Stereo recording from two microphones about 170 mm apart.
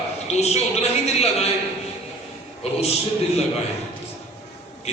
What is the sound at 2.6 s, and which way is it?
Speech, 40° left (ahead or behind).